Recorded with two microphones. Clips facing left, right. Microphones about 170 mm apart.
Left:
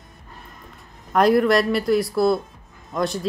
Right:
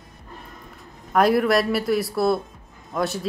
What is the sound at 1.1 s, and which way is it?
Speech, centre (ahead or behind).